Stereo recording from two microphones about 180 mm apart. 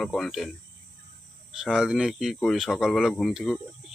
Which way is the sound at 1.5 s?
5° right (ahead or behind).